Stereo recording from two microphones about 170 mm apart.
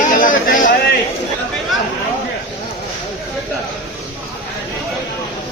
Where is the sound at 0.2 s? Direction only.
50° left (ahead or behind).